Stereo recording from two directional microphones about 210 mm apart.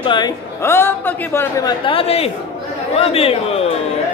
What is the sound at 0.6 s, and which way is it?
A man's voice, 10° left (ahead or behind).